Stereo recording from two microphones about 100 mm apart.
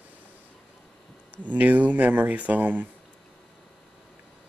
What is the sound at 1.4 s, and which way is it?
Speech, 15° right (ahead or behind).